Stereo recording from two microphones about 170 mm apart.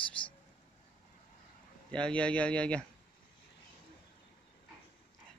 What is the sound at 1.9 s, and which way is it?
Speech, 5° left (ahead or behind).